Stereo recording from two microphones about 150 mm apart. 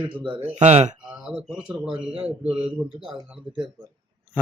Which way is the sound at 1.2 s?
5° right (ahead or behind).